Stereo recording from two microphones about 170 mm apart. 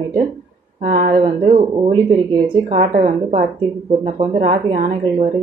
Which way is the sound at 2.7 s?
40° right (ahead or behind).